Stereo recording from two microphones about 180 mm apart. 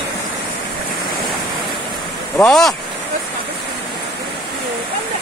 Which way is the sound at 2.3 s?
5° left (ahead or behind).